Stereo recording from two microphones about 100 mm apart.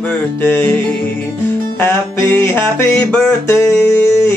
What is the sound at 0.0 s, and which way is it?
Music, 20° left (ahead or behind).